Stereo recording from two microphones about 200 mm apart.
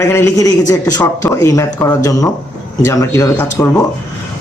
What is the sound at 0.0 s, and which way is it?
Speech, 10° left (ahead or behind).